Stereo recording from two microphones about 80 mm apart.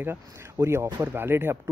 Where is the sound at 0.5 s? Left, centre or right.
Right.